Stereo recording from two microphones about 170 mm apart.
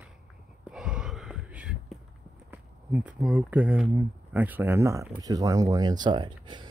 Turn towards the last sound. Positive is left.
turn(degrees=-25)  # may be behind; listen again after turning